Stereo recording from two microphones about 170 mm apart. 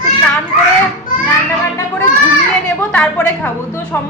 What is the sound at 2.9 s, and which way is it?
Speech, 10° left (ahead or behind).